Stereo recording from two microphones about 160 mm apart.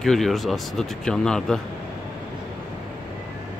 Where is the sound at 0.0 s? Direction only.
Centre (ahead or behind).